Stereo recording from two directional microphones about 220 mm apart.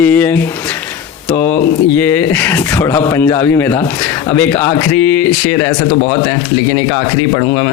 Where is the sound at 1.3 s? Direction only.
35° left (ahead or behind).